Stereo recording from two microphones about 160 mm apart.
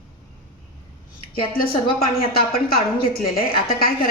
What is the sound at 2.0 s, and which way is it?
A woman's voice, 70° left (ahead or behind).